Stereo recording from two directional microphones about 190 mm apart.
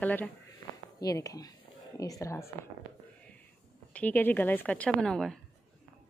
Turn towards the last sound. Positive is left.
turn(degrees=0)  # may be behind; listen again after turning